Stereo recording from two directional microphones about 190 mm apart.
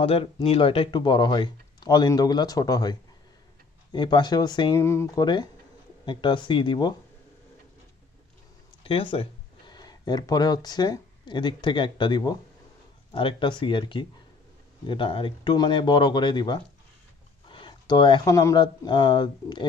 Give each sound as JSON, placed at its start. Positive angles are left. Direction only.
{"t": 0.0, "sound": "speech", "side_deg": 30}
{"t": 8.8, "sound": "speech", "side_deg": 30}